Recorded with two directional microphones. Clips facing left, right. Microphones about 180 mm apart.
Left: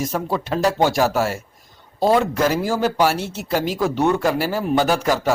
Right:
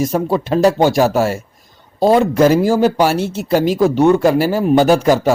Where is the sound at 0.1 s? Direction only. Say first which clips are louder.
Right 7 dB; 25° right (ahead or behind).